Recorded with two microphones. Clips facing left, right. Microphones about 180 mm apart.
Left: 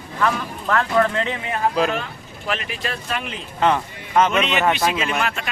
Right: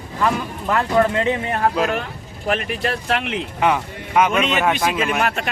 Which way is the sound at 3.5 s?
10° right (ahead or behind).